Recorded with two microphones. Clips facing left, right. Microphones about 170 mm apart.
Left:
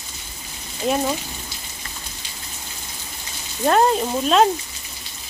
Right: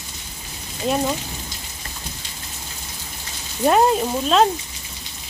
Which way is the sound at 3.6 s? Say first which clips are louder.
Right 1 dB; 5° right (ahead or behind).